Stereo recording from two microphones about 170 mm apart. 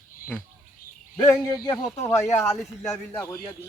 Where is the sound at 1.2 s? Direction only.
20° left (ahead or behind).